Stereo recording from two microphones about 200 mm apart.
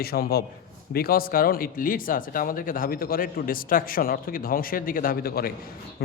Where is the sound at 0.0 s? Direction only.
50° left (ahead or behind).